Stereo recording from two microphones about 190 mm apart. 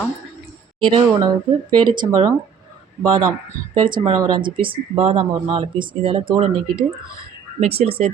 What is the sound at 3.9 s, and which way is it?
Speech, 20° right (ahead or behind).